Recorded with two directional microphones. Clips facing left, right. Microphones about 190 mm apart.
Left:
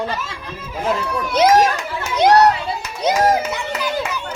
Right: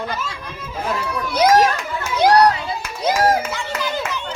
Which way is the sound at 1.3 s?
25° left (ahead or behind).